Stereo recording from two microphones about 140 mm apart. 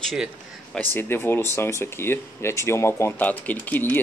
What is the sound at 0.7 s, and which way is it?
Speech, 15° left (ahead or behind).